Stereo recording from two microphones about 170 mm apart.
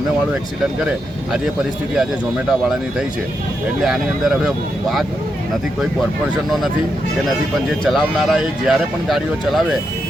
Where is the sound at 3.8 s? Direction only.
Centre (ahead or behind).